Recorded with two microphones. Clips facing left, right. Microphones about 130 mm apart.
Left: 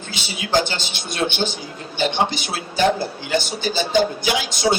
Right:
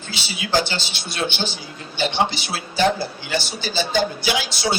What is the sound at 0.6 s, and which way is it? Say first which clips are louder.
A man's voice: left 1 dB; 50° left (ahead or behind).